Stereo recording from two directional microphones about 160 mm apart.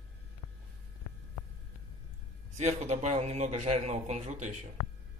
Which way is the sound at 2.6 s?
45° right (ahead or behind).